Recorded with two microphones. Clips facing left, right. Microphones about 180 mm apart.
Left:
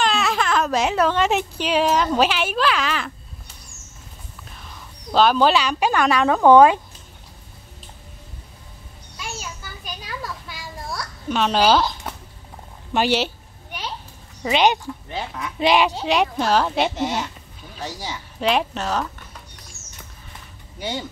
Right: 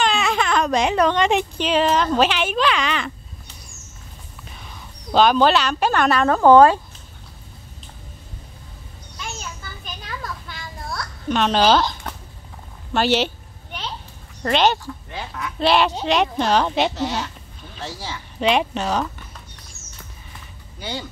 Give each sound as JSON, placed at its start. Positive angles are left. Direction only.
{"t": 0.0, "sound": "speech", "side_deg": 0}
{"t": 5.1, "sound": "speech", "side_deg": 5}
{"t": 6.5, "sound": "speech", "side_deg": 10}
{"t": 9.2, "sound": "children playing", "side_deg": 5}
{"t": 12.9, "sound": "speech", "side_deg": 10}
{"t": 14.4, "sound": "speech", "side_deg": 10}
{"t": 15.0, "sound": "speech", "side_deg": 25}
{"t": 17.0, "sound": "speech", "side_deg": 15}
{"t": 18.4, "sound": "speech", "side_deg": 0}